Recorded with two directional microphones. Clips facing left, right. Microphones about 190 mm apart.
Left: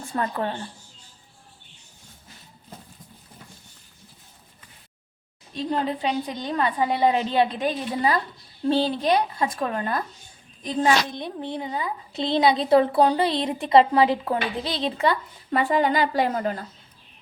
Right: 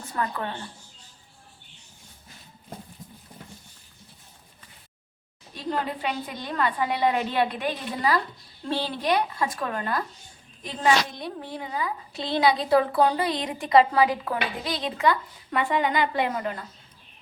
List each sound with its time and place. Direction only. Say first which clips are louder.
0.0 s a woman's voice: left 3 dB; 30° left (ahead or behind)
5.5 s a woman's voice: left 4 dB; 20° left (ahead or behind)
11.2 s a woman's voice: left 4 dB; 25° left (ahead or behind); by 16.6 s 40° left (ahead or behind)